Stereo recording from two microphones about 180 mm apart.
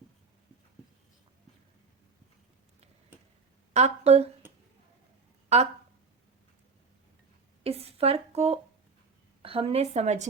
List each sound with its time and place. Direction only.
3.7 s speech: 40° right (ahead or behind)
5.5 s speech: 35° right (ahead or behind)
7.6 s a sound: 35° right (ahead or behind)
9.4 s speech: 30° right (ahead or behind)